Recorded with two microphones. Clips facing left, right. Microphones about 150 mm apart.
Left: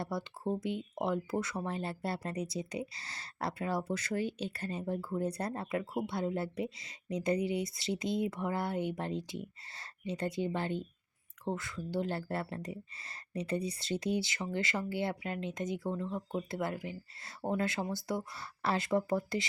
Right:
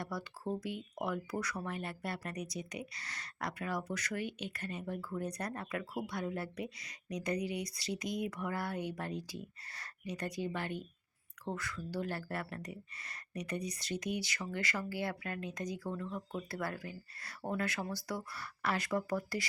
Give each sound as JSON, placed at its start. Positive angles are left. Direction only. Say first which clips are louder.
{"t": 0.0, "sound": "speech", "louder": "left 4 dB", "side_deg": 25}